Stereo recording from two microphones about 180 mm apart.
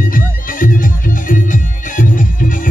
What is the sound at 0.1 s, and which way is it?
Music, 50° left (ahead or behind).